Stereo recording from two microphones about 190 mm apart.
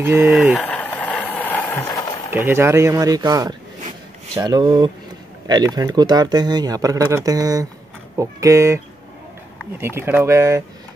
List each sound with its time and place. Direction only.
0.0 s speech: 10° right (ahead or behind)
0.3 s a sound: centre (ahead or behind); by 2.1 s 20° left (ahead or behind)
2.3 s speech: 15° right (ahead or behind)